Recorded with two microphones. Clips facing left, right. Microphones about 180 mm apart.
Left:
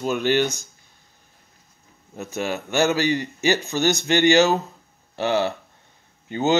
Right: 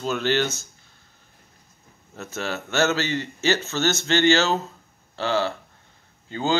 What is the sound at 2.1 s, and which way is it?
Speech, 15° left (ahead or behind).